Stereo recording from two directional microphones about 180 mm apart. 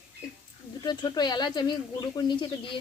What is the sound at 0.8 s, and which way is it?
Speech, 25° left (ahead or behind).